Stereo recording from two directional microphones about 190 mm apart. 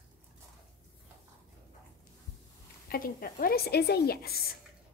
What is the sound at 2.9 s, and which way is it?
Speech, 50° left (ahead or behind).